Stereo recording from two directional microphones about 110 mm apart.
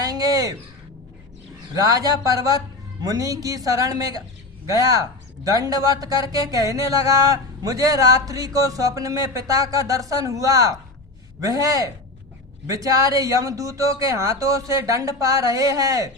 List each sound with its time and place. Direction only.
0.0 s crow: 35° right (ahead or behind)
1.7 s speech: 35° right (ahead or behind)